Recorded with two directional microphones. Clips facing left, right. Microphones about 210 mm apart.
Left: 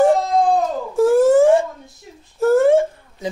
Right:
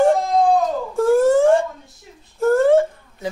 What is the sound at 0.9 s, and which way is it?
Wail, 5° left (ahead or behind).